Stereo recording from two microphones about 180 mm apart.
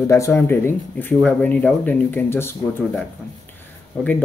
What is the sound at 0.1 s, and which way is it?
Speech, 15° left (ahead or behind).